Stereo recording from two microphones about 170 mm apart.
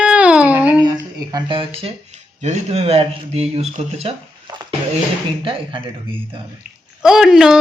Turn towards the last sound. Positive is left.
turn(degrees=0)  # may be behind; listen again after turning